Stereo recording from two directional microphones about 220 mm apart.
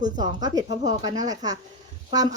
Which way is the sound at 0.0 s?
20° right (ahead or behind).